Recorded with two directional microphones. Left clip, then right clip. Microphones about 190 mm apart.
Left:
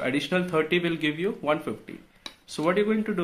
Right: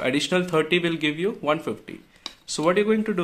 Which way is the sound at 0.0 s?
30° right (ahead or behind).